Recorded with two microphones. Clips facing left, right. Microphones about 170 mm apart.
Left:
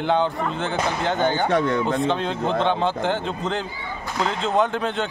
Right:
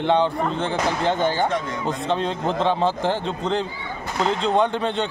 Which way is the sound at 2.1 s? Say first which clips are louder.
Even; 35° right (ahead or behind).